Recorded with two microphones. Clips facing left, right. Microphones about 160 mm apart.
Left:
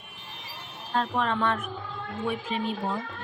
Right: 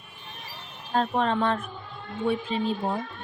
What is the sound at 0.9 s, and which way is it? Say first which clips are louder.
Speech: right 3 dB; 35° right (ahead or behind).